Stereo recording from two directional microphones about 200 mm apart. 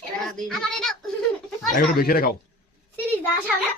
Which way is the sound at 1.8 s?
50° left (ahead or behind).